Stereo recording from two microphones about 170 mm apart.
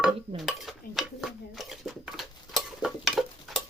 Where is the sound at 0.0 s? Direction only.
Centre (ahead or behind).